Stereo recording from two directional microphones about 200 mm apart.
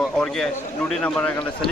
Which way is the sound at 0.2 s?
5° left (ahead or behind).